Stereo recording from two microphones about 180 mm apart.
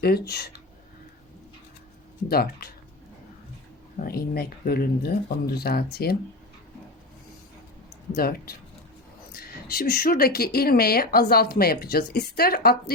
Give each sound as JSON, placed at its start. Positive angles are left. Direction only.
{"t": 0.0, "sound": "speech", "side_deg": 60}
{"t": 2.3, "sound": "speech", "side_deg": 60}
{"t": 4.0, "sound": "speech", "side_deg": 55}
{"t": 8.1, "sound": "speech", "side_deg": 55}